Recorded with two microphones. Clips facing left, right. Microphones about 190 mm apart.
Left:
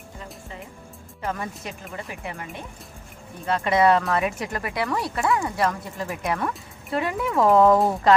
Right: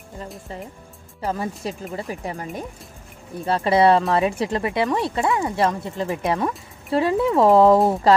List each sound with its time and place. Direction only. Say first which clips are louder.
1.2 s speech: right 5 dB; 30° right (ahead or behind)